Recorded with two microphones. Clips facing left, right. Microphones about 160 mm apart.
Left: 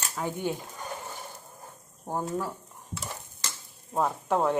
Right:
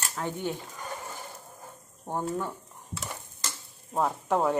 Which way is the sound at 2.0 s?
5° left (ahead or behind).